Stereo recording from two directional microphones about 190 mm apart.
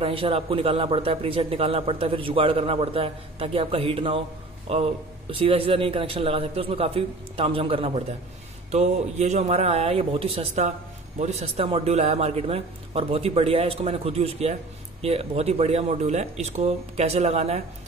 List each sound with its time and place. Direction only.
0.0 s a man's voice: 30° right (ahead or behind)